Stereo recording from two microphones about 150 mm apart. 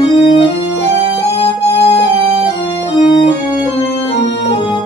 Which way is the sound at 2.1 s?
40° right (ahead or behind).